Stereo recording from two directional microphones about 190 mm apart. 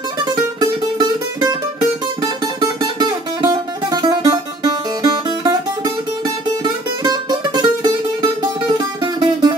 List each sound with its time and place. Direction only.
0.2 s music: 20° right (ahead or behind)